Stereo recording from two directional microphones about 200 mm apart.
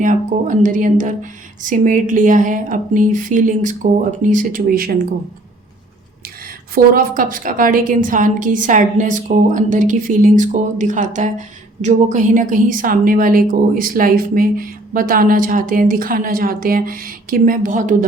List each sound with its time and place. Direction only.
0.0 s speech: 40° right (ahead or behind)
6.7 s a woman's voice: 45° right (ahead or behind)